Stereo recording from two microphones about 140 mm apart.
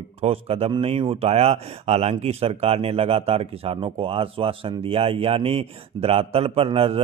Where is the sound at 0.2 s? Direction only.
45° right (ahead or behind).